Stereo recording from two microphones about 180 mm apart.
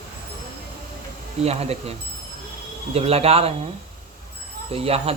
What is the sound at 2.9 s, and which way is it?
Speech, 35° right (ahead or behind).